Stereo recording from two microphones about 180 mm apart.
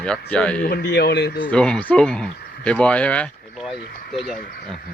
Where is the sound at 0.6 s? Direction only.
60° left (ahead or behind).